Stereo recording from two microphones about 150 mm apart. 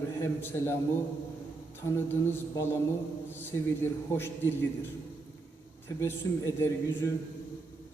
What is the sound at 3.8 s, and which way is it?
Speech, 15° left (ahead or behind).